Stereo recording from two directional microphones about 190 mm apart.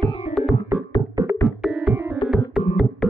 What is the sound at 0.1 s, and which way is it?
Music, 35° left (ahead or behind).